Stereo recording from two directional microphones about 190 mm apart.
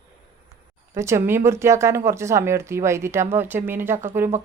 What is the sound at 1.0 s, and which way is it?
Speech, 15° right (ahead or behind).